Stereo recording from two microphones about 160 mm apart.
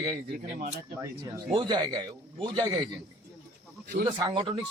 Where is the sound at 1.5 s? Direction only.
30° right (ahead or behind).